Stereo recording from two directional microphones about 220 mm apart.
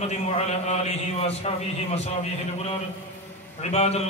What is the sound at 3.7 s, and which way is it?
Speech, 30° left (ahead or behind).